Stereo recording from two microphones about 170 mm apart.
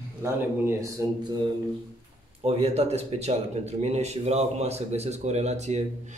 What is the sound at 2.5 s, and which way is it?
Speech, 40° right (ahead or behind).